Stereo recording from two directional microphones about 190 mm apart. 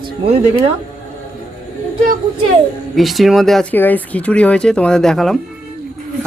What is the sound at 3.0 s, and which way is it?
Speech, centre (ahead or behind).